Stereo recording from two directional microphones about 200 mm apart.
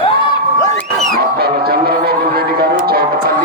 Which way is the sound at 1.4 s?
50° right (ahead or behind).